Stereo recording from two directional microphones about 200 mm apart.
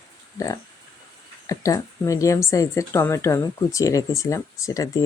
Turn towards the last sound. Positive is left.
turn(degrees=15)  # may be behind; listen again after turning